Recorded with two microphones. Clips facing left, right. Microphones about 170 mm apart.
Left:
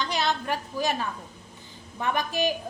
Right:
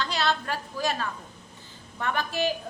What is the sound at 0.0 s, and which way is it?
A woman's voice, 20° left (ahead or behind).